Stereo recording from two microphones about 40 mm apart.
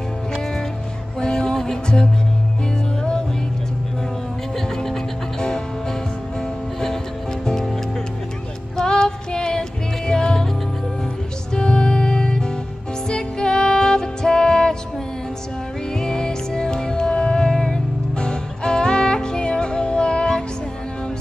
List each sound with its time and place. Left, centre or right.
1.2 s music: centre
4.6 s music: centre
7.4 s music: centre
8.7 s music: centre
11.5 s music: centre
16.0 s music: centre